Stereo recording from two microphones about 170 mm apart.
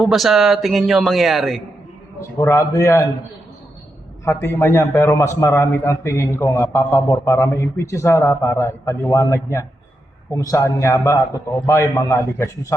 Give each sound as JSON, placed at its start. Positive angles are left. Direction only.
{"t": 0.0, "sound": "a man's voice", "side_deg": 0}
{"t": 2.4, "sound": "a man's voice", "side_deg": 20}
{"t": 4.3, "sound": "a man's voice", "side_deg": 15}